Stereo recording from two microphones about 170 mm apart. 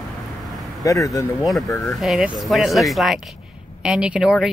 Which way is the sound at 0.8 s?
20° left (ahead or behind).